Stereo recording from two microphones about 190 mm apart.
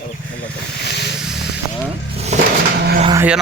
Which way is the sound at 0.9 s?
60° left (ahead or behind).